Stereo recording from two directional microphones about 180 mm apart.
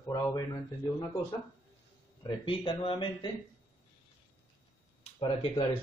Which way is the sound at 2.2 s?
30° left (ahead or behind).